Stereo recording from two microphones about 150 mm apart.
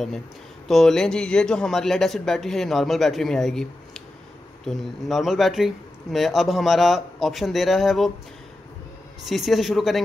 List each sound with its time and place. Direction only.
0.7 s speech: centre (ahead or behind)
9.2 s speech: centre (ahead or behind)